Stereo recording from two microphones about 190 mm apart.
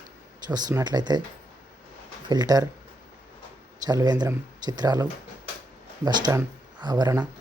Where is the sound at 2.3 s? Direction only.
20° right (ahead or behind).